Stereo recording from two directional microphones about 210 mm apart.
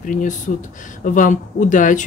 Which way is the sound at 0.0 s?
40° left (ahead or behind).